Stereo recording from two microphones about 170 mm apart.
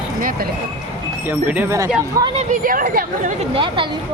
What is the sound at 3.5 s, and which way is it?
Speech, 30° right (ahead or behind).